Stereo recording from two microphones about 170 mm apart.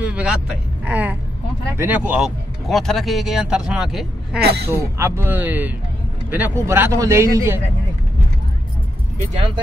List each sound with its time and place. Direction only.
0.0 s vehicle: 5° right (ahead or behind)
1.8 s speech: 10° right (ahead or behind)
4.4 s speech: 70° right (ahead or behind)
4.9 s speech: 15° right (ahead or behind)